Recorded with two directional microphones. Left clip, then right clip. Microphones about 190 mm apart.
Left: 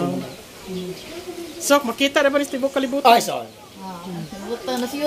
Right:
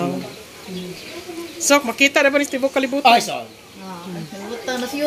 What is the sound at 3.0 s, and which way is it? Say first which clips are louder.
Speech: even; 20° left (ahead or behind).